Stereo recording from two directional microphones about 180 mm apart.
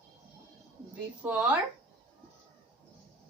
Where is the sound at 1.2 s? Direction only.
10° right (ahead or behind).